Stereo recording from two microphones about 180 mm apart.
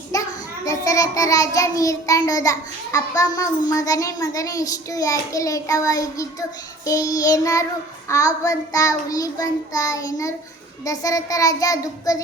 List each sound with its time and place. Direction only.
0.1 s a child's voice: 20° left (ahead or behind)